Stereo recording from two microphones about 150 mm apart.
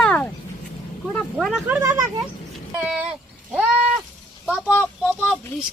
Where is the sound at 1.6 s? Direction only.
15° right (ahead or behind).